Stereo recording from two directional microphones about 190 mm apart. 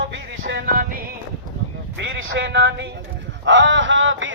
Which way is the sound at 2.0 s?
70° right (ahead or behind).